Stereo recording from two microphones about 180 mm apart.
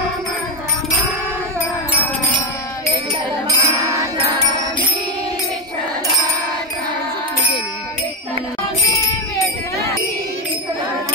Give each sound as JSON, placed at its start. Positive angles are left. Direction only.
{"t": 3.4, "sound": "music", "side_deg": -15}